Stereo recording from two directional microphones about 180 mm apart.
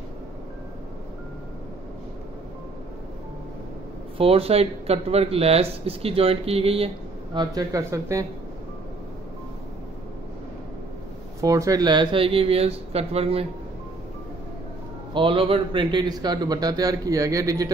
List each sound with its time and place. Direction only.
4.2 s speech: 30° right (ahead or behind)
7.3 s speech: 20° right (ahead or behind)
11.4 s speech: 20° right (ahead or behind); by 13.5 s 35° right (ahead or behind)
15.1 s speech: 30° right (ahead or behind)